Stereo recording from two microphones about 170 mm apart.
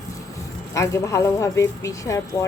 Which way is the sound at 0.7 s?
20° left (ahead or behind).